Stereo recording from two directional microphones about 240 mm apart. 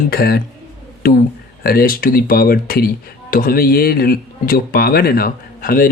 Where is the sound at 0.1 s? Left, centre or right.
Left.